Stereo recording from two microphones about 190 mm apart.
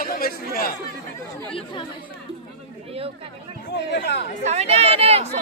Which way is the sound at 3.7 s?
60° left (ahead or behind).